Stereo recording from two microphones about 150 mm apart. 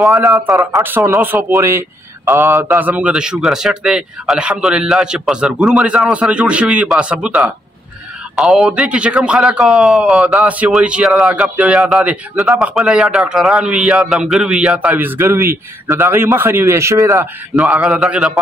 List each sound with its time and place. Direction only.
0.1 s a man's voice: 20° right (ahead or behind); by 18.4 s 5° right (ahead or behind)